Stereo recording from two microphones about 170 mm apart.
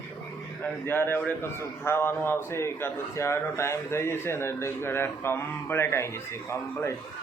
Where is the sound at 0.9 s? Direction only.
10° left (ahead or behind).